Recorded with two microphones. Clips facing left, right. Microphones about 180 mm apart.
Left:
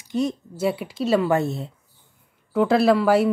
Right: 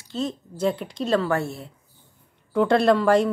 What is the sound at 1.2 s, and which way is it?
Speech, 20° left (ahead or behind).